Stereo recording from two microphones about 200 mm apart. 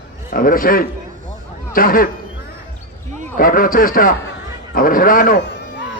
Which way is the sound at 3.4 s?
45° left (ahead or behind).